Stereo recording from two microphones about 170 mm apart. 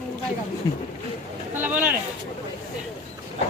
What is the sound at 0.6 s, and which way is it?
Speech, 20° left (ahead or behind).